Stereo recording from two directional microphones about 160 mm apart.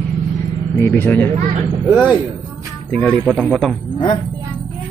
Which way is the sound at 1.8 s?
10° right (ahead or behind).